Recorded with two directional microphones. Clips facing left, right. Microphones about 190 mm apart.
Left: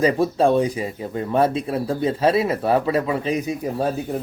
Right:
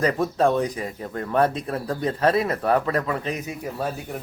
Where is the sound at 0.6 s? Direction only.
10° left (ahead or behind).